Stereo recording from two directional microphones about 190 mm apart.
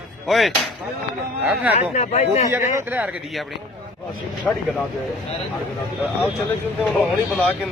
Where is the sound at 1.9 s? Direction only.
35° left (ahead or behind).